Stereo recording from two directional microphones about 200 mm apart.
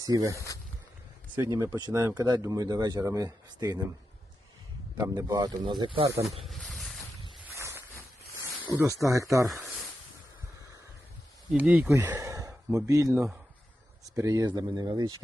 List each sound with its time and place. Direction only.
0.0 s speech: 15° right (ahead or behind)
0.3 s speech: 15° left (ahead or behind)
1.5 s a man's voice: 15° right (ahead or behind)
4.9 s a man's voice: 15° right (ahead or behind)
6.4 s a sound: centre (ahead or behind)
7.4 s a sound: 15° right (ahead or behind)
9.0 s speech: 15° right (ahead or behind)
11.5 s a man's voice: 5° right (ahead or behind)